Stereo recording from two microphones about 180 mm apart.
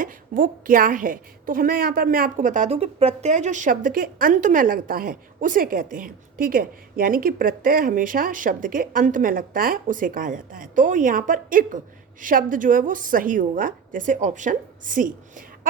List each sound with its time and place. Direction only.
0.0 s a woman's voice: 50° right (ahead or behind)